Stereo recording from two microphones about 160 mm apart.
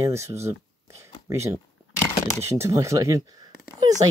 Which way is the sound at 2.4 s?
15° right (ahead or behind).